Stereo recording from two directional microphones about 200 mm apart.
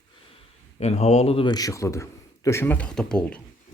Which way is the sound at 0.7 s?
35° left (ahead or behind).